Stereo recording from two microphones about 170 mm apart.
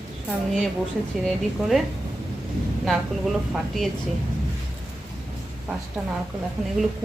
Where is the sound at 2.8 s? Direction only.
Centre (ahead or behind).